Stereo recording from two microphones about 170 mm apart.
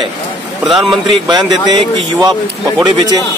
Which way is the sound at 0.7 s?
Centre (ahead or behind).